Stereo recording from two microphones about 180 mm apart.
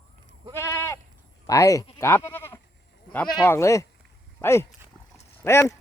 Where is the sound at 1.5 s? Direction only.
20° left (ahead or behind).